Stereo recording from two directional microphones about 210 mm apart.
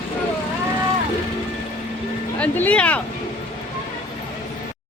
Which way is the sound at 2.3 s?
5° left (ahead or behind).